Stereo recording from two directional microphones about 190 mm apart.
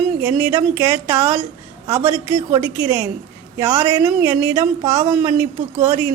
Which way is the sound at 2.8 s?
20° right (ahead or behind).